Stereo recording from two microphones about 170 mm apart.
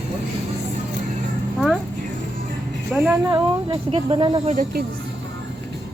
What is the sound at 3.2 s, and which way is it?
Speech, 25° right (ahead or behind).